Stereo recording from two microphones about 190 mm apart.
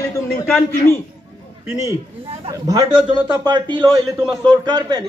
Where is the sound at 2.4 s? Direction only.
20° right (ahead or behind).